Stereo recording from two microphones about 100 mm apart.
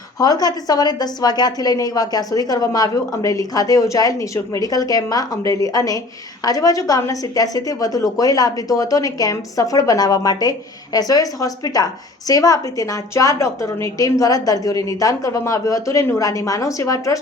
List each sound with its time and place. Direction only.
0.2 s a woman's voice: 40° left (ahead or behind)